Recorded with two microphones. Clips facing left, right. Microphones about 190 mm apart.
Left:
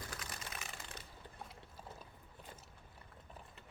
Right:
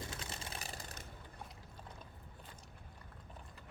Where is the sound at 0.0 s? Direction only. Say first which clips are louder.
Right 2 dB; 25° right (ahead or behind).